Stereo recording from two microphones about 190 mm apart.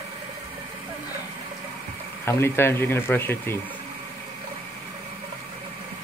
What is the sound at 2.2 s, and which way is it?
Speech, 10° left (ahead or behind).